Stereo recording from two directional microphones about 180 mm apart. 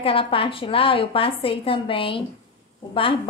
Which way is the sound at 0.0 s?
30° left (ahead or behind).